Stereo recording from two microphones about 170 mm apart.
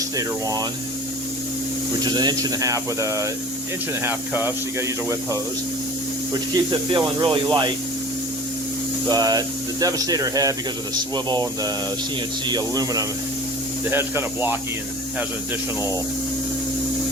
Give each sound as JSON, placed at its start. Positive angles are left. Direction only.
{"t": 0.2, "sound": "speech", "side_deg": -20}
{"t": 2.0, "sound": "speech", "side_deg": -25}
{"t": 6.7, "sound": "speech", "side_deg": -30}
{"t": 9.0, "sound": "speech", "side_deg": -25}